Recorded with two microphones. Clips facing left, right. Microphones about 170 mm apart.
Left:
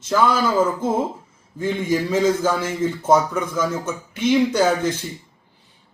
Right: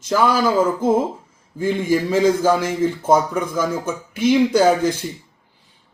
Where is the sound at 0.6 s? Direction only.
10° right (ahead or behind).